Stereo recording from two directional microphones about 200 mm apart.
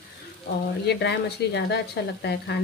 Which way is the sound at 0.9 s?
55° left (ahead or behind).